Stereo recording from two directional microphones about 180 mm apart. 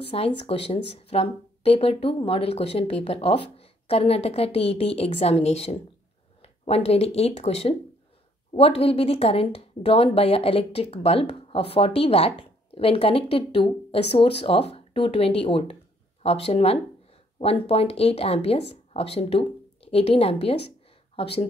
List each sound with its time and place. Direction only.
0.1 s a woman's voice: 30° left (ahead or behind)